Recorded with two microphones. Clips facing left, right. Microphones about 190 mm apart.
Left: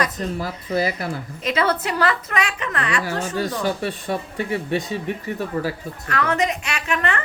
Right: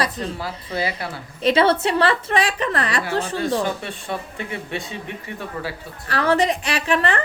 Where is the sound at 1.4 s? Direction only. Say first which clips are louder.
Right 5 dB; 30° right (ahead or behind).